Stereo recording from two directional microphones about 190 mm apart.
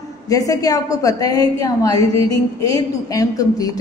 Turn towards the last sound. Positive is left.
turn(degrees=20)  # may be behind; listen again after turning